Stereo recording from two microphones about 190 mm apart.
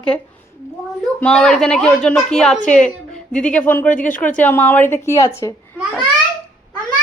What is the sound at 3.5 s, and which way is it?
Speech, 10° left (ahead or behind).